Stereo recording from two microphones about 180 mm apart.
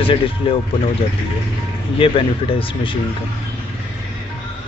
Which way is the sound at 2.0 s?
30° left (ahead or behind).